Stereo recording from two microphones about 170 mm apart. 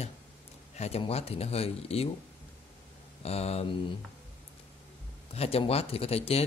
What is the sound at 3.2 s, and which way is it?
Speech, 35° left (ahead or behind).